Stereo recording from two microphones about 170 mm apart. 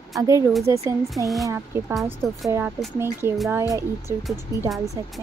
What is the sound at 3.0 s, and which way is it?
Speech, 15° right (ahead or behind).